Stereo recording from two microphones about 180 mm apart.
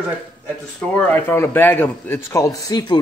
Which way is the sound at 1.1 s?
10° left (ahead or behind).